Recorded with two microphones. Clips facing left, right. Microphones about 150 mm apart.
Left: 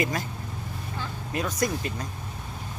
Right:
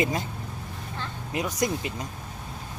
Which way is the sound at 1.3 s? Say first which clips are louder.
Even; 20° right (ahead or behind).